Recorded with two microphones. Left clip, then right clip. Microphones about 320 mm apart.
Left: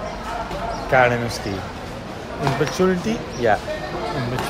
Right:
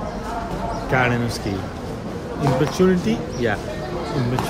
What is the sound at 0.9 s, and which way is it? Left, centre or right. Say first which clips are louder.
Speech: left 4 dB; centre.